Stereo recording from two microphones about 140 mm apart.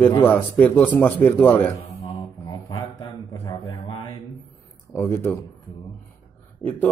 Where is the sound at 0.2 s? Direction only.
10° left (ahead or behind).